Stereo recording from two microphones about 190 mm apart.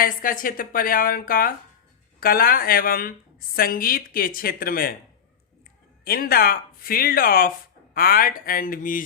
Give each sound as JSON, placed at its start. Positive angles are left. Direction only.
{"t": 0.0, "sound": "a woman's voice", "side_deg": 45}
{"t": 6.1, "sound": "a woman's voice", "side_deg": 50}